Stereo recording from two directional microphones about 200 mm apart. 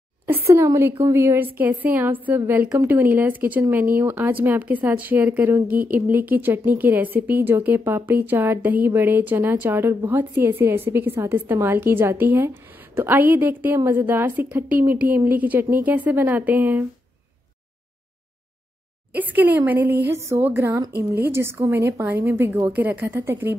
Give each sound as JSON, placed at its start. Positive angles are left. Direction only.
{"t": 0.5, "sound": "speech", "side_deg": -15}
{"t": 19.1, "sound": "speech", "side_deg": -10}